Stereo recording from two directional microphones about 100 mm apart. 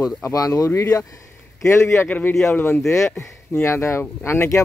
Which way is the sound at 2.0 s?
15° left (ahead or behind).